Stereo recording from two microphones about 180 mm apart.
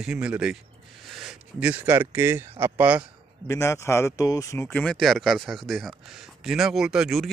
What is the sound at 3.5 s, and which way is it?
Speech, 15° left (ahead or behind).